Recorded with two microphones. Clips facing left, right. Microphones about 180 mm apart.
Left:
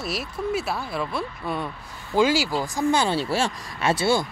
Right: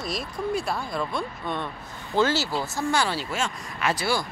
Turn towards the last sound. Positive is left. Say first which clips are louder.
# left 4 dB
turn(degrees=25)  # may be behind; listen again after turning